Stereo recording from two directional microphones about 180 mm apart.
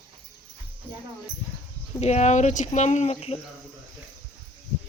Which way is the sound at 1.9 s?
40° left (ahead or behind).